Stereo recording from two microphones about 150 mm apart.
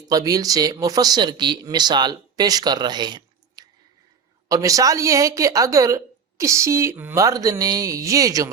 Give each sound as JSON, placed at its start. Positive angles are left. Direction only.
{"t": 0.1, "sound": "speech", "side_deg": -25}